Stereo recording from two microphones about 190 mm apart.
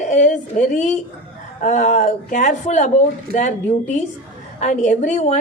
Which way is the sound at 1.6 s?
40° left (ahead or behind).